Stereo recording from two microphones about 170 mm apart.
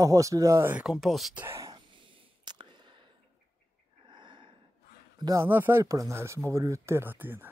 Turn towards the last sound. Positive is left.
turn(degrees=-10)  # may be behind; listen again after turning